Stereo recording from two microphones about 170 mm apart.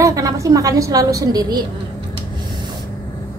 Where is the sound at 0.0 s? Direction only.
20° right (ahead or behind).